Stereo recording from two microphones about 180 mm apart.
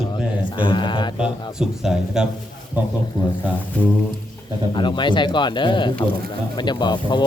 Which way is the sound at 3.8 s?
10° left (ahead or behind).